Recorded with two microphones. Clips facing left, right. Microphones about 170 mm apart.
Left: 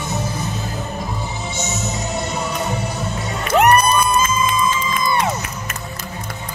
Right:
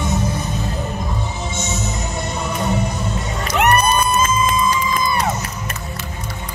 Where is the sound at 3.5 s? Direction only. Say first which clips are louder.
Left 2 dB; 35° left (ahead or behind).